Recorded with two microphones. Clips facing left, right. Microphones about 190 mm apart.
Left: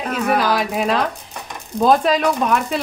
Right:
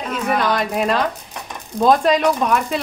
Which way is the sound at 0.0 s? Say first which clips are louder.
Left 2 dB; 55° left (ahead or behind).